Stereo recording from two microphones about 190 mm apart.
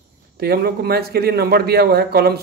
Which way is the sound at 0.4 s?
55° right (ahead or behind).